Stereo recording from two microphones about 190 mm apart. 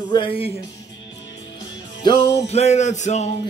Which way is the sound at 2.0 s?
25° left (ahead or behind).